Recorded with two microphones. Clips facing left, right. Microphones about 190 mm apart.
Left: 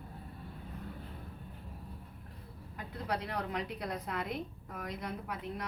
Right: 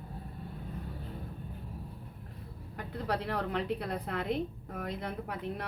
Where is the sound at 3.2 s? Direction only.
60° right (ahead or behind).